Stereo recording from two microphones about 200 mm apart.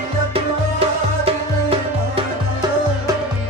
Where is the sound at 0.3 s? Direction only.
30° right (ahead or behind).